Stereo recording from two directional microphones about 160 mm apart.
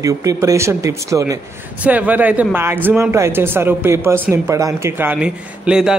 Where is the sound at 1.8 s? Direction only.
10° right (ahead or behind).